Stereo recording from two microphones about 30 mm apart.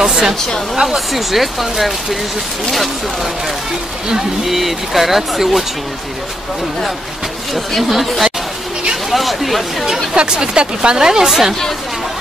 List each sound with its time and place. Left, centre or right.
0.0 s a woman's voice: centre
0.9 s speech: centre
4.5 s speech: centre
7.5 s speech: centre
10.1 s speech: right
11.0 s a woman's voice: centre